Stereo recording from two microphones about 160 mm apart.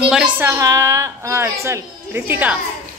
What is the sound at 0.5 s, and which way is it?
A woman's voice, 20° right (ahead or behind).